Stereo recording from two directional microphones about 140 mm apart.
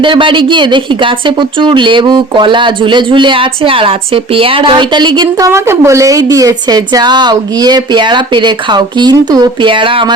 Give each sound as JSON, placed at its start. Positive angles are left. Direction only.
{"t": 0.0, "sound": "speech", "side_deg": -35}
{"t": 5.5, "sound": "a woman's voice", "side_deg": -20}